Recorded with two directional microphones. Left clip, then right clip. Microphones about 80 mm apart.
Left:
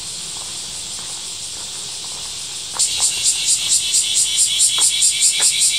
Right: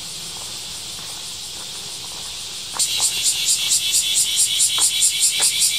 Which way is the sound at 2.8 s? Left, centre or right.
Right.